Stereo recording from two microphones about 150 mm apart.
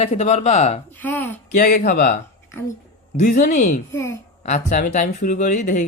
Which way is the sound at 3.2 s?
65° left (ahead or behind).